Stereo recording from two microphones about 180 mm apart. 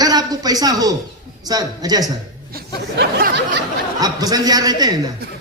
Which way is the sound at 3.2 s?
75° right (ahead or behind).